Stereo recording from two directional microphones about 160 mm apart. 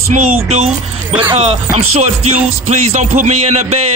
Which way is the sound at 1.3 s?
40° right (ahead or behind).